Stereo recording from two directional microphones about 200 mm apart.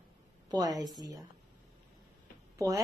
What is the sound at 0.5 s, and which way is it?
Speech, 20° right (ahead or behind).